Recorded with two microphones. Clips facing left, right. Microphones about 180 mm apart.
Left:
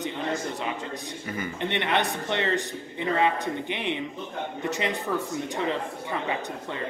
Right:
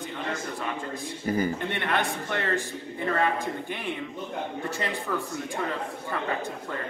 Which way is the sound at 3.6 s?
70° left (ahead or behind).